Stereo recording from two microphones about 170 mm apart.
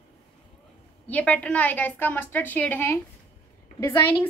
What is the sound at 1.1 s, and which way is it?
A woman's voice, 10° left (ahead or behind).